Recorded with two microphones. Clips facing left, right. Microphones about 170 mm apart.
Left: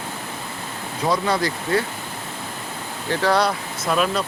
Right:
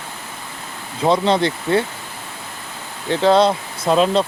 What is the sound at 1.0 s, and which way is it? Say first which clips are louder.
Speech: right 5 dB; 25° right (ahead or behind).